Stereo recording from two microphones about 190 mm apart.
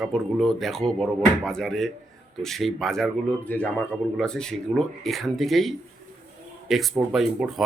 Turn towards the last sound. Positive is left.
turn(degrees=0)  # may be behind; listen again after turning